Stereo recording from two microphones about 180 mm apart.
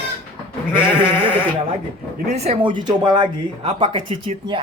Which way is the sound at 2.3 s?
35° right (ahead or behind).